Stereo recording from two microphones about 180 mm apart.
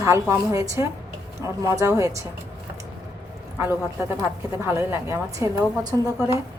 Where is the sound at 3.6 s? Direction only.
15° right (ahead or behind).